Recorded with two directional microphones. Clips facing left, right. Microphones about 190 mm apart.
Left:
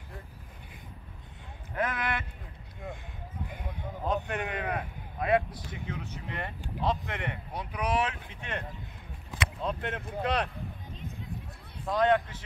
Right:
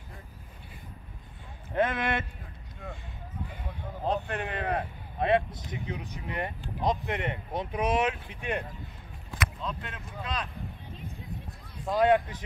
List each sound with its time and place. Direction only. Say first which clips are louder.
1.8 s speech: right 4 dB; 25° right (ahead or behind)
3.4 s a sound: left 1 dB; 15° left (ahead or behind)
4.0 s a sound: right 1 dB; 35° right (ahead or behind)
4.5 s vehicle: right 2 dB; 35° right (ahead or behind); by 6.5 s 15° right (ahead or behind)
6.8 s speech: right 2 dB; 15° right (ahead or behind)
9.7 s speech: left 5 dB; 60° left (ahead or behind)
11.9 s a man's voice: right 2 dB; 10° right (ahead or behind)